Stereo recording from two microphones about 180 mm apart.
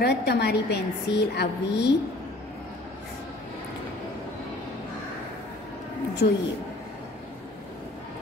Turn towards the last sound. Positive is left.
turn(degrees=55)  # may be behind; listen again after turning